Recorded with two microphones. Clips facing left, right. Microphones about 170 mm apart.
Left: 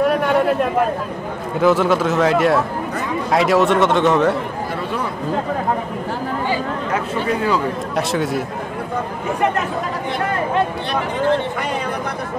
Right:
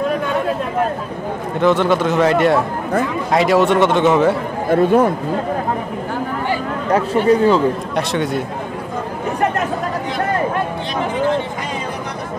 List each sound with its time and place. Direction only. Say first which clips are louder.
1.6 s a man's voice: even; 5° left (ahead or behind)
4.6 s speech: right 11 dB; 50° right (ahead or behind)
7.2 s a man's voice: right 7 dB; 30° right (ahead or behind)
7.9 s a man's voice: right 1 dB; centre (ahead or behind)